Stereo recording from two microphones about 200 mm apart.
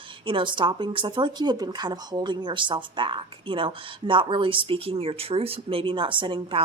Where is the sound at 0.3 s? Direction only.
25° right (ahead or behind).